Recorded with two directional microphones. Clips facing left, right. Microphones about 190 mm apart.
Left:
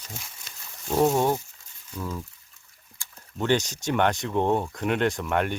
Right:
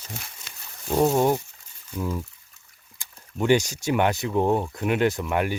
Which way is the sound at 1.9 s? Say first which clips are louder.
Right 4 dB; 10° right (ahead or behind).